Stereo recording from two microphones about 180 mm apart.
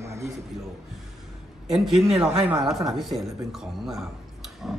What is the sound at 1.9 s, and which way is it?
Speech, 35° right (ahead or behind).